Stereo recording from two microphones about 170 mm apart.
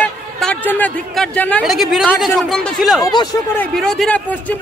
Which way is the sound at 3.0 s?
25° left (ahead or behind).